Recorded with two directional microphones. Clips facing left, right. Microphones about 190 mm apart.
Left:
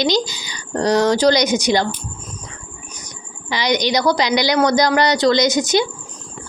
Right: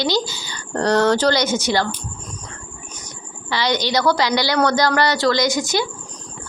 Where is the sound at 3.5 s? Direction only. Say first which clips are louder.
Left 2 dB; 15° left (ahead or behind).